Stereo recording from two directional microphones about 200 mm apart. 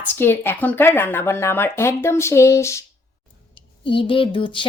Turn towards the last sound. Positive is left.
turn(degrees=25)  # may be behind; listen again after turning